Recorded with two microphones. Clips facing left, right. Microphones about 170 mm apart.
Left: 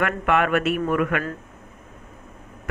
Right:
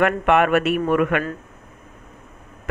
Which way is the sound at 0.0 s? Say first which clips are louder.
Right 4 dB; 20° right (ahead or behind).